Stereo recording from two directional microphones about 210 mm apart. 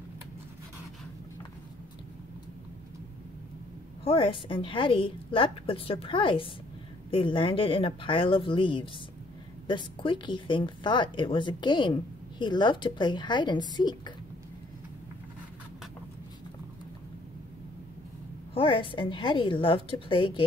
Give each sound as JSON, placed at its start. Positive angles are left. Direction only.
{"t": 4.0, "sound": "speech", "side_deg": 25}
{"t": 18.5, "sound": "speech", "side_deg": 25}